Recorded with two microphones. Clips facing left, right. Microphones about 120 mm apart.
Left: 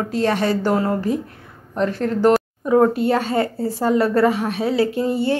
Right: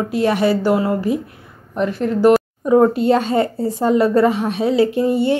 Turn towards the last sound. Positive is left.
turn(degrees=-20)  # may be behind; listen again after turning